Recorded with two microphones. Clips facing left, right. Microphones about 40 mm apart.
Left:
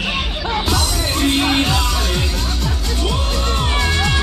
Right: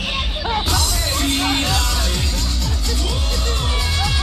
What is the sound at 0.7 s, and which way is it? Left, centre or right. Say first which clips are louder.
Music: left 2 dB; centre.